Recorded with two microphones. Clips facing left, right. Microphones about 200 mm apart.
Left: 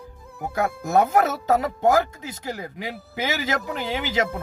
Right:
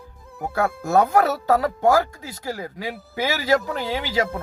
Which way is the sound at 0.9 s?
35° right (ahead or behind).